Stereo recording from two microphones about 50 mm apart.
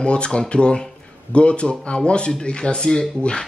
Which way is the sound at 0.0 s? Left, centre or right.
Centre.